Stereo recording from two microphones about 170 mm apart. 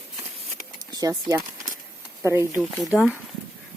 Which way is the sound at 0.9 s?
20° right (ahead or behind).